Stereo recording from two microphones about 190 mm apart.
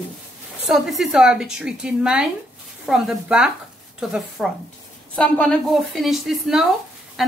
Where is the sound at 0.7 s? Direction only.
Centre (ahead or behind).